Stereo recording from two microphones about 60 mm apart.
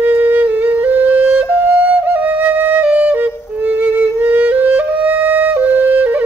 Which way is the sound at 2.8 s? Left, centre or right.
Right.